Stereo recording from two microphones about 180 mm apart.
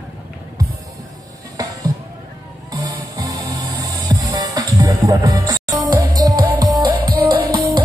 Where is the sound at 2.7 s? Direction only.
20° right (ahead or behind).